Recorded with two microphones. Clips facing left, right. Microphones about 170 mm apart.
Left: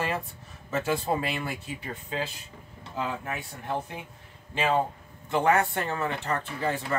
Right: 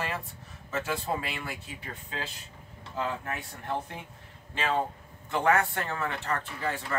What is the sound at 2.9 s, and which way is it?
Speech, 10° left (ahead or behind).